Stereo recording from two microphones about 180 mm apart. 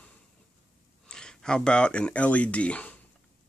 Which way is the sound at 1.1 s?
5° left (ahead or behind).